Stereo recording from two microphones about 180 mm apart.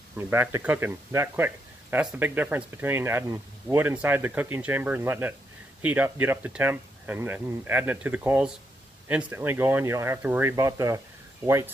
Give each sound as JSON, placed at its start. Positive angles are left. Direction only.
{"t": 0.2, "sound": "speech", "side_deg": -15}